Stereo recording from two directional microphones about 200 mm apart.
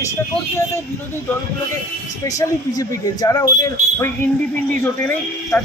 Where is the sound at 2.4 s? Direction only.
15° left (ahead or behind).